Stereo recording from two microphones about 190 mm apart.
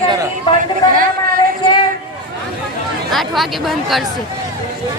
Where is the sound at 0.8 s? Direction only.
20° left (ahead or behind).